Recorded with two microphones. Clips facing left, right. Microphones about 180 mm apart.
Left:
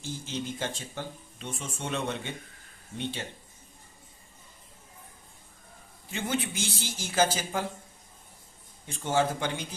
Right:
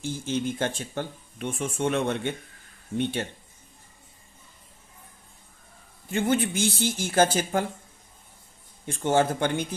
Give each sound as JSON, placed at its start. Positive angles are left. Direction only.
{"t": 0.0, "sound": "speech", "side_deg": -55}
{"t": 6.1, "sound": "speech", "side_deg": -55}
{"t": 8.9, "sound": "speech", "side_deg": -55}